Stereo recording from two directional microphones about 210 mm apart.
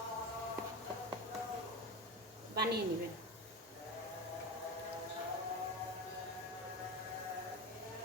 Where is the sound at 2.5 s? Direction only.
50° right (ahead or behind).